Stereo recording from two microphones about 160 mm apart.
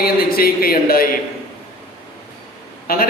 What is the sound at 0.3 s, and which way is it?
Speech, 70° left (ahead or behind).